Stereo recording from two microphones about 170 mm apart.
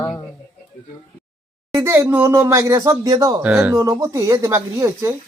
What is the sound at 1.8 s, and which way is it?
Speech, 15° right (ahead or behind).